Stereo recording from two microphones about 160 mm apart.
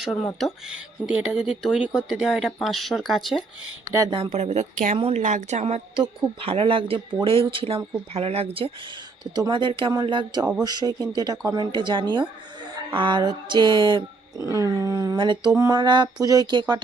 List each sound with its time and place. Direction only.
0.3 s speech: centre (ahead or behind)
4.1 s a woman's voice: 40° right (ahead or behind)
6.0 s speech: 35° right (ahead or behind)
14.3 s a sound: 20° left (ahead or behind)
14.6 s speech: 20° right (ahead or behind)